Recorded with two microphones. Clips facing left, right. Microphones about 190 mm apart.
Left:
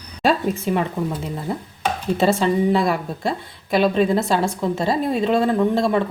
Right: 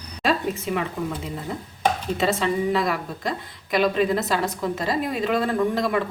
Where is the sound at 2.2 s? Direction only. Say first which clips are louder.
Left 5 dB; 30° left (ahead or behind).